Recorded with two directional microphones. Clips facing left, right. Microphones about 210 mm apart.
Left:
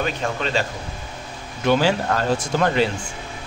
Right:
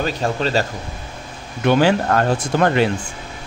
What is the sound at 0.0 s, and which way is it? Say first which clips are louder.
Speech: right 3 dB; 35° right (ahead or behind).